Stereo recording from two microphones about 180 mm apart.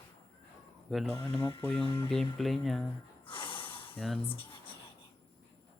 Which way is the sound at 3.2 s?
30° left (ahead or behind).